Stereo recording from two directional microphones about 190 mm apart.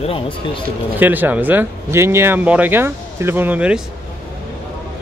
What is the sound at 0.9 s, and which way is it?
Speech, 10° right (ahead or behind).